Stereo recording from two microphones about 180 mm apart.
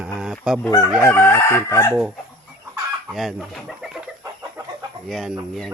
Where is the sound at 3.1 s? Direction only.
Centre (ahead or behind).